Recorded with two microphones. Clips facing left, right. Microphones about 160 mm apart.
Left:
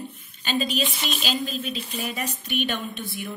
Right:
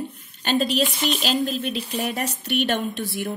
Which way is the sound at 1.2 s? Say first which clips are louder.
Right 5 dB; 65° right (ahead or behind).